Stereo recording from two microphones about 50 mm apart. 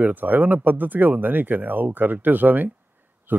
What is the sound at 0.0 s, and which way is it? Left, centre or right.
Speech, right.